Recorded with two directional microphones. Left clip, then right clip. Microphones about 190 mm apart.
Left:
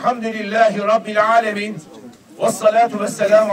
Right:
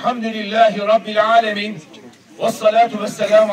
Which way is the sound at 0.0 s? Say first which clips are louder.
Left 1 dB; 5° right (ahead or behind).